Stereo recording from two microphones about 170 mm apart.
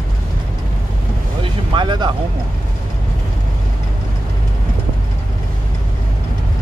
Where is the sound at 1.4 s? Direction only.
30° right (ahead or behind).